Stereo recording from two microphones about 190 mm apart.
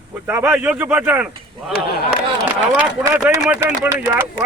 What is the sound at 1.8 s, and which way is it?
Speech, 55° left (ahead or behind).